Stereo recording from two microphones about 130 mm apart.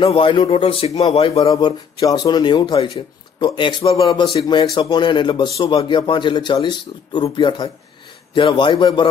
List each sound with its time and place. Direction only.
0.0 s speech: 40° left (ahead or behind)
1.4 s speech: 35° left (ahead or behind)
5.9 s speech: 40° left (ahead or behind)